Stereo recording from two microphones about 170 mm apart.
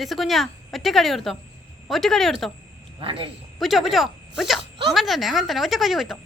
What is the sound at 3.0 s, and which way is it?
Speech, 30° right (ahead or behind).